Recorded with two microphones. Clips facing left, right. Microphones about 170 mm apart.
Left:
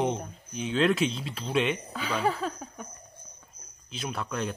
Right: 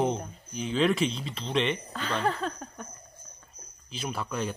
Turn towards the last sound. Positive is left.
turn(degrees=0)  # may be behind; listen again after turning